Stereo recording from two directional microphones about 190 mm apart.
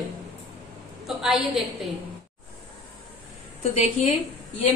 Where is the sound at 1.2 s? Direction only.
Centre (ahead or behind).